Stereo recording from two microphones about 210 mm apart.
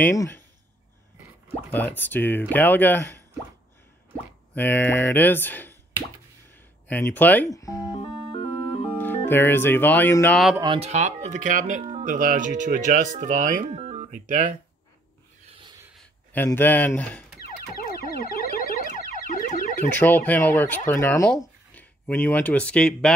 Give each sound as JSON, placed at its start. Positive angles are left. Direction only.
{"t": 0.0, "sound": "speech", "side_deg": 10}
{"t": 1.7, "sound": "speech", "side_deg": 10}
{"t": 4.6, "sound": "speech", "side_deg": 10}
{"t": 6.5, "sound": "music", "side_deg": 10}
{"t": 8.9, "sound": "speech", "side_deg": 10}
{"t": 10.5, "sound": "speech", "side_deg": -20}
{"t": 16.4, "sound": "speech", "side_deg": 10}
{"t": 17.4, "sound": "car alarm", "side_deg": 45}
{"t": 19.9, "sound": "speech", "side_deg": 10}